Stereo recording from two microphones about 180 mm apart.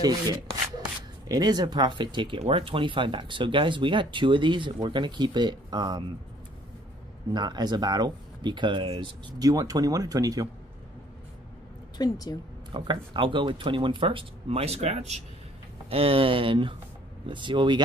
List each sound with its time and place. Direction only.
0.0 s rub: 20° right (ahead or behind)
1.3 s speech: 20° right (ahead or behind)
7.3 s speech: 25° right (ahead or behind)
12.0 s a woman's voice: 20° left (ahead or behind)
12.7 s speech: 25° right (ahead or behind)